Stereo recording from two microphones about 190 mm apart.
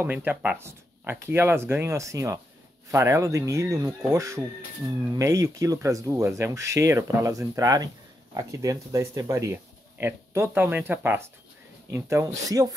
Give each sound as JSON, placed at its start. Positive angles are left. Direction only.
{"t": 0.0, "sound": "speech", "side_deg": -10}